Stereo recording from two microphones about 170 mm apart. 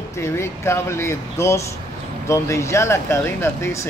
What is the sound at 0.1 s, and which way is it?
Speech, 15° left (ahead or behind).